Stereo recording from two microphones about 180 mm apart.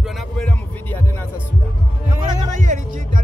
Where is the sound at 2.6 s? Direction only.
45° right (ahead or behind).